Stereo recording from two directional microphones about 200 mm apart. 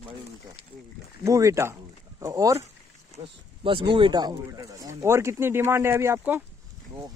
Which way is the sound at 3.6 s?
25° right (ahead or behind).